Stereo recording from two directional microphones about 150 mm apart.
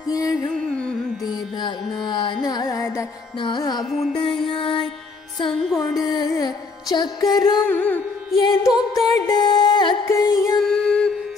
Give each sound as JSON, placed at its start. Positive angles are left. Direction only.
{"t": 0.1, "sound": "music", "side_deg": 25}
{"t": 3.3, "sound": "carnatic music", "side_deg": 30}
{"t": 4.5, "sound": "music", "side_deg": 35}
{"t": 5.9, "sound": "carnatic music", "side_deg": 0}
{"t": 6.1, "sound": "music", "side_deg": 25}
{"t": 7.6, "sound": "music", "side_deg": 10}
{"t": 8.4, "sound": "music", "side_deg": 30}
{"t": 10.6, "sound": "music", "side_deg": 5}